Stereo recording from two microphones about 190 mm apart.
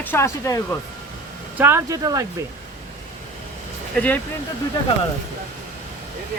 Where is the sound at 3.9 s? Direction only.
10° left (ahead or behind).